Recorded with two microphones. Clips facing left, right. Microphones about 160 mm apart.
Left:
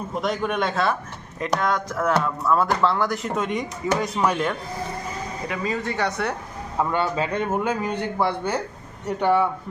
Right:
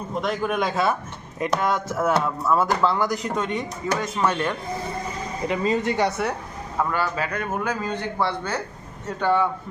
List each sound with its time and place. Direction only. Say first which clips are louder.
0.1 s a man's voice: right 1 dB; centre (ahead or behind)
5.5 s speech: right 5 dB; 25° right (ahead or behind)
6.1 s speech: right 1 dB; 5° right (ahead or behind)
6.7 s a man's voice: left 2 dB; 25° left (ahead or behind)